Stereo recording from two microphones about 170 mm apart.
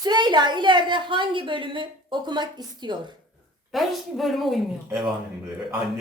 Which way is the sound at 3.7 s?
Centre (ahead or behind).